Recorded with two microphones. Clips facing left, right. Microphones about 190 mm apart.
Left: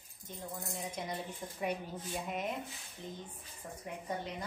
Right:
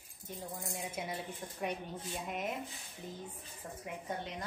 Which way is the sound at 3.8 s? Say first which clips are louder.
Left 1 dB; centre (ahead or behind).